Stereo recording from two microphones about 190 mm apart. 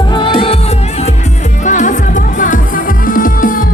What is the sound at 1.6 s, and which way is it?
Music, 40° left (ahead or behind).